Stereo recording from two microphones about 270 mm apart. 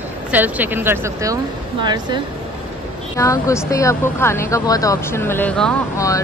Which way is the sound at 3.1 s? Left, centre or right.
Centre.